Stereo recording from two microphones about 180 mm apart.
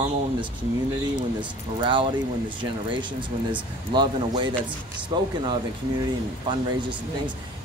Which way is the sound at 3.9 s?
25° right (ahead or behind).